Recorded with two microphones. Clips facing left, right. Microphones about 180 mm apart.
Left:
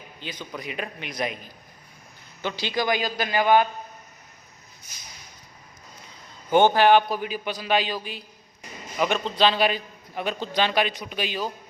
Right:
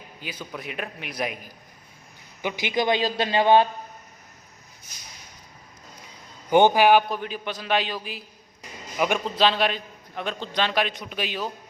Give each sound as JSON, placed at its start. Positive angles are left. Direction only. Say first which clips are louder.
{"t": 0.2, "sound": "a man's voice", "louder": "even", "side_deg": -10}
{"t": 6.5, "sound": "a man's voice", "louder": "even", "side_deg": -15}
{"t": 7.1, "sound": "a man's voice", "louder": "left 2 dB", "side_deg": 5}